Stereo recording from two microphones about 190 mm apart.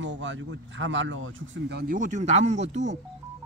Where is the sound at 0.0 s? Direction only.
75° right (ahead or behind).